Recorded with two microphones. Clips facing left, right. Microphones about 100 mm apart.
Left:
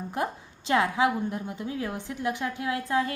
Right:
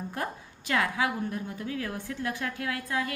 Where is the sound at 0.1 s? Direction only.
20° left (ahead or behind).